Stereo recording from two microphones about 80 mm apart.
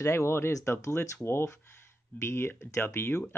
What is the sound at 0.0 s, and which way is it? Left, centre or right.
Speech, left.